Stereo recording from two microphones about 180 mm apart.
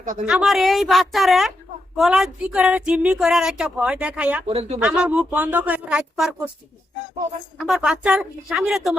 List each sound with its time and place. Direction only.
0.3 s speech: centre (ahead or behind)
4.4 s speech: 30° right (ahead or behind)
4.8 s speech: 5° right (ahead or behind)
7.6 s speech: 5° right (ahead or behind)